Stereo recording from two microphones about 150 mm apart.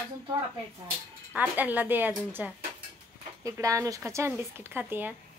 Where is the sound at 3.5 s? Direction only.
20° right (ahead or behind).